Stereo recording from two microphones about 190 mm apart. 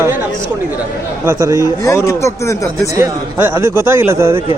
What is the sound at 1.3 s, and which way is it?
Speech, 15° right (ahead or behind).